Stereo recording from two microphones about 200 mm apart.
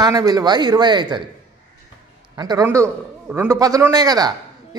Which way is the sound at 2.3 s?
20° right (ahead or behind).